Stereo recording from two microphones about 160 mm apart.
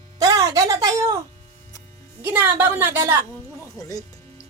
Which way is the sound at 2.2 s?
15° right (ahead or behind).